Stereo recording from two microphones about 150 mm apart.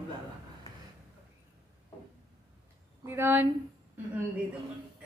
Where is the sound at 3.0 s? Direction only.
15° right (ahead or behind).